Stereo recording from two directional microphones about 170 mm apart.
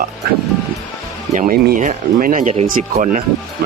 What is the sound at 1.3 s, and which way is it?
Speech, 45° right (ahead or behind).